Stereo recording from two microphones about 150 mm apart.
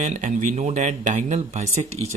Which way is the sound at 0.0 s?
55° right (ahead or behind).